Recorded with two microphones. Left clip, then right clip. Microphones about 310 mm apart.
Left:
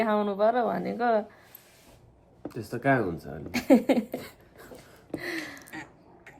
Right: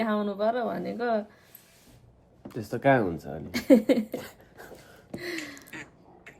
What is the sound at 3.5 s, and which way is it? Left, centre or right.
Speech, centre.